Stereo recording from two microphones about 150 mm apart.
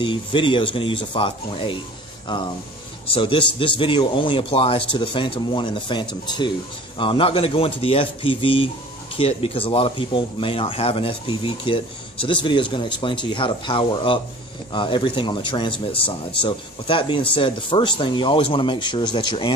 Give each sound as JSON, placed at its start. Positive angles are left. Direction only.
{"t": 0.0, "sound": "speech", "side_deg": 35}